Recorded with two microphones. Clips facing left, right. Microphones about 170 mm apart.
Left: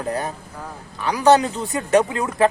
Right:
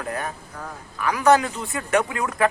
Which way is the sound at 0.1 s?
35° left (ahead or behind).